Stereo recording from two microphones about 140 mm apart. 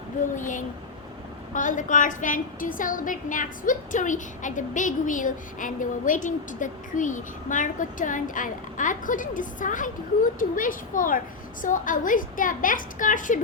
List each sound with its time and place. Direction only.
0.3 s a woman's voice: 65° left (ahead or behind)